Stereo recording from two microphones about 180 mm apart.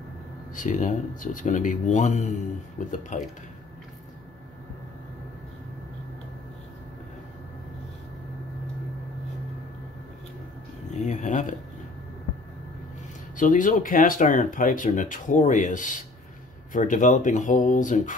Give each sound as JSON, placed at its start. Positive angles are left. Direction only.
{"t": 0.6, "sound": "speech", "side_deg": 45}
{"t": 10.9, "sound": "a sound", "side_deg": 40}
{"t": 13.4, "sound": "speech", "side_deg": 45}